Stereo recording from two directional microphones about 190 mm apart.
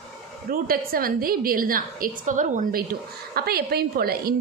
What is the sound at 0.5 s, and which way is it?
A woman's voice, 50° right (ahead or behind).